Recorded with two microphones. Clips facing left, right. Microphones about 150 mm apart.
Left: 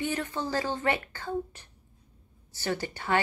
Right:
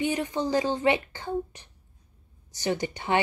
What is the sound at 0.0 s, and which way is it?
Speech, 15° right (ahead or behind).